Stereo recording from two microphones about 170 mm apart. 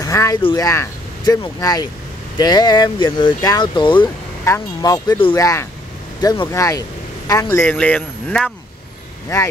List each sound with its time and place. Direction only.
0.0 s a sound: 20° left (ahead or behind)
0.4 s speech: 30° left (ahead or behind)
0.7 s speech: 20° left (ahead or behind)
6.2 s speech: 30° left (ahead or behind)
6.5 s speech: 20° left (ahead or behind)